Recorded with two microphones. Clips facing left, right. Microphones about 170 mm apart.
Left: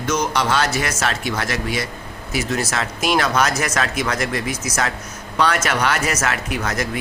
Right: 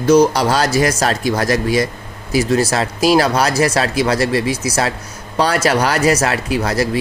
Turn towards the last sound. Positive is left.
turn(degrees=-35)  # may be behind; listen again after turning